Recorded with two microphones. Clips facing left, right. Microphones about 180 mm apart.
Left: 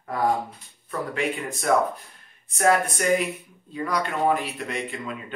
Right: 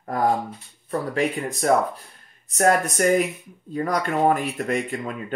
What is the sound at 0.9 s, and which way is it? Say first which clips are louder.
Speech: right 4 dB; 40° right (ahead or behind).